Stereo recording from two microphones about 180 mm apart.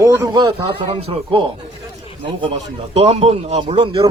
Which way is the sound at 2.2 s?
30° right (ahead or behind).